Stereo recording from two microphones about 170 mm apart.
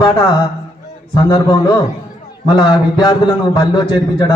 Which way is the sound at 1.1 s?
25° left (ahead or behind).